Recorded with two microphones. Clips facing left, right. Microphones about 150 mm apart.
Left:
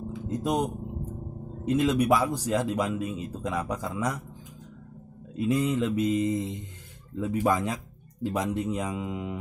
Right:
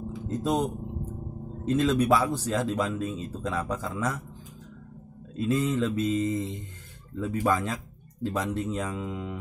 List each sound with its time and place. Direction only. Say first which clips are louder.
0.3 s speech: right 1 dB; 15° left (ahead or behind)
1.7 s speech: even; 10° left (ahead or behind)
5.3 s speech: left 1 dB; 15° left (ahead or behind)